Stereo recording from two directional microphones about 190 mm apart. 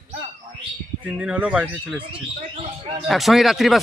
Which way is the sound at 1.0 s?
5° right (ahead or behind).